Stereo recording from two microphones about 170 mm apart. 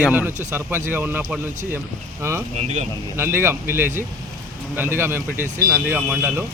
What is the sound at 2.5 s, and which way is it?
Speech, 40° right (ahead or behind).